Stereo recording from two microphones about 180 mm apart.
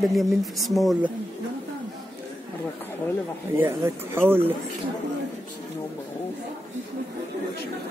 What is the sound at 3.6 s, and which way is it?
Speech, 10° right (ahead or behind).